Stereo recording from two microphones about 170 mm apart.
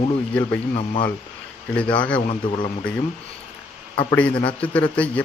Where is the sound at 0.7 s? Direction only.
35° left (ahead or behind).